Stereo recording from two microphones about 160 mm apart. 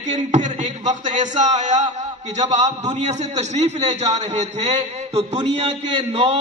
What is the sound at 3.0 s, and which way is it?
A man's voice, 45° right (ahead or behind).